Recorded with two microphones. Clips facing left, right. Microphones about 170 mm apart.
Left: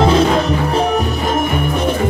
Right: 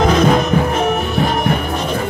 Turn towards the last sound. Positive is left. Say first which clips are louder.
# left 1 dB
turn(degrees=30)  # may be behind; listen again after turning